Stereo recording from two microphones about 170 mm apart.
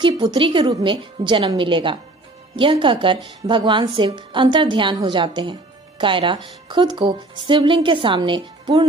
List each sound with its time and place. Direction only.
0.0 s a woman's voice: 30° right (ahead or behind)